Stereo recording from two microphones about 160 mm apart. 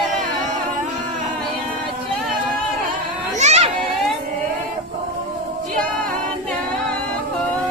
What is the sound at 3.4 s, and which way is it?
Children playing, 45° right (ahead or behind).